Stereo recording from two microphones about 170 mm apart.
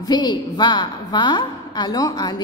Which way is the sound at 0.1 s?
25° left (ahead or behind).